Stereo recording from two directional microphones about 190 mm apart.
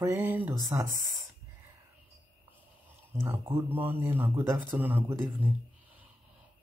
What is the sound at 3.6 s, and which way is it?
Speech, 10° right (ahead or behind).